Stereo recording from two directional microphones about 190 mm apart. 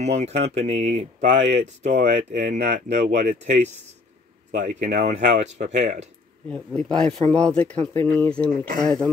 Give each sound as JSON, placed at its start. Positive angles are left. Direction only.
{"t": 0.0, "sound": "speech", "side_deg": -35}
{"t": 6.5, "sound": "speech", "side_deg": 5}